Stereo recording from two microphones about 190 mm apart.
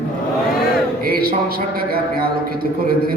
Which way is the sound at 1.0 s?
50° right (ahead or behind).